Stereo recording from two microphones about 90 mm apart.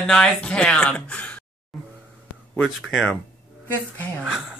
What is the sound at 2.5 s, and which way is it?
Speech, 5° left (ahead or behind).